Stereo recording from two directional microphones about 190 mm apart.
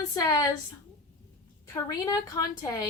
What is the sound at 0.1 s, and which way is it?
Speech, 20° left (ahead or behind).